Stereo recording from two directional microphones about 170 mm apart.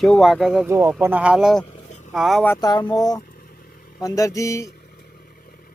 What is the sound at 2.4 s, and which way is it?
Speech, 20° left (ahead or behind).